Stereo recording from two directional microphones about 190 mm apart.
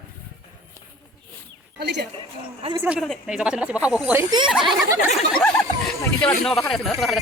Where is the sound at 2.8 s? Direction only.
5° right (ahead or behind).